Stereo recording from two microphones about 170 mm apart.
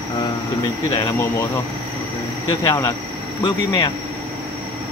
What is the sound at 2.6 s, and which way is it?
Speech, 20° left (ahead or behind).